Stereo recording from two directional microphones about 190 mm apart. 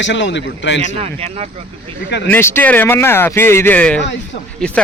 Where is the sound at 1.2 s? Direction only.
35° right (ahead or behind).